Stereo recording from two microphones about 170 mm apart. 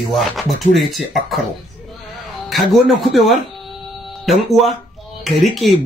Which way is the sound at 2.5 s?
Centre (ahead or behind).